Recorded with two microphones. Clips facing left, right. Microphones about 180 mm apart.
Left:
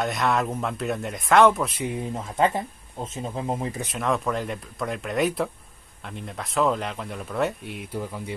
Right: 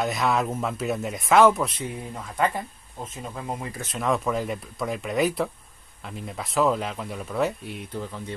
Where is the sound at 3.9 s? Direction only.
Centre (ahead or behind).